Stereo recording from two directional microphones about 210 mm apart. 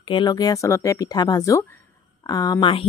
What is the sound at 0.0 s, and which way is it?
Speech, 20° left (ahead or behind).